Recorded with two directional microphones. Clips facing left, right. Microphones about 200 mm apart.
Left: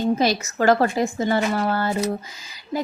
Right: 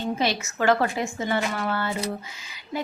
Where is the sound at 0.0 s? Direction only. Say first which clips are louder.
Left 5 dB; 40° left (ahead or behind).